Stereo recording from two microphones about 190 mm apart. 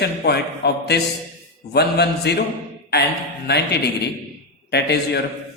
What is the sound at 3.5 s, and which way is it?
A man's voice, 60° left (ahead or behind).